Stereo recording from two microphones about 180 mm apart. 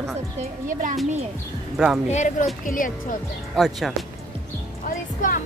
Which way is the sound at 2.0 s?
40° left (ahead or behind).